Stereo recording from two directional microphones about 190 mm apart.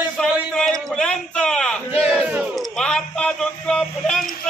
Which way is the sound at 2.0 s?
Centre (ahead or behind).